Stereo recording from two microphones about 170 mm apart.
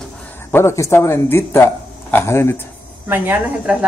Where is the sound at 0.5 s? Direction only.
15° left (ahead or behind).